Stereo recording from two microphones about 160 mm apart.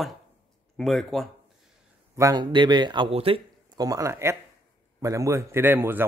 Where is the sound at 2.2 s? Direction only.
25° right (ahead or behind).